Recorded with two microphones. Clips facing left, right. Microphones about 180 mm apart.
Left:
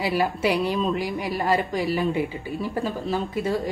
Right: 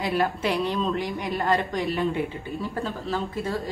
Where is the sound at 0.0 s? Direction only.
5° left (ahead or behind).